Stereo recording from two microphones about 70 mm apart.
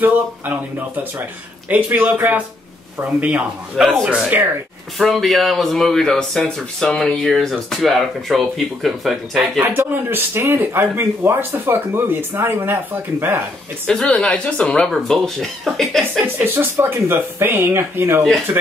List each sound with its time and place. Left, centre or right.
0.0 s speech: right
4.9 s speech: centre
9.6 s speech: right
13.8 s speech: centre
14.9 s speech: centre
16.3 s speech: right